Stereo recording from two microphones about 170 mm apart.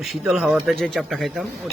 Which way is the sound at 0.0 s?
Centre (ahead or behind).